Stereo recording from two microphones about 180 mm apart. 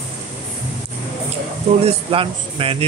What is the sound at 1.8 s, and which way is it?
A man's voice, 30° right (ahead or behind).